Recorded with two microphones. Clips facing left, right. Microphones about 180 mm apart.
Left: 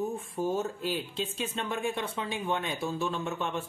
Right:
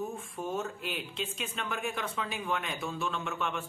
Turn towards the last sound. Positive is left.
turn(degrees=35)  # may be behind; listen again after turning